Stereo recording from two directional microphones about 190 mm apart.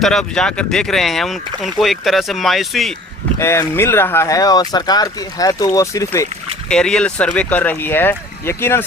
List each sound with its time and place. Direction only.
0.0 s speech: 5° left (ahead or behind)
3.3 s speech: 15° left (ahead or behind)
6.7 s speech: 5° left (ahead or behind)